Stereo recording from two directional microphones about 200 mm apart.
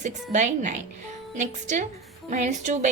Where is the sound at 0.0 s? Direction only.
35° right (ahead or behind).